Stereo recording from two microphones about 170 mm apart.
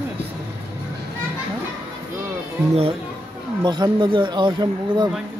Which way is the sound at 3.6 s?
25° right (ahead or behind).